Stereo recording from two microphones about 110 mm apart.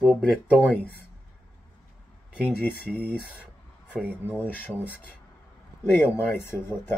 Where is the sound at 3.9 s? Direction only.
15° right (ahead or behind).